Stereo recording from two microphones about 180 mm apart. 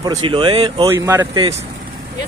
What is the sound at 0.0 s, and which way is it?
Speech, 25° right (ahead or behind).